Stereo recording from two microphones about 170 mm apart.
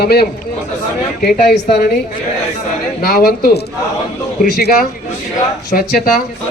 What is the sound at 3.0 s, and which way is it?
Speech, 65° left (ahead or behind).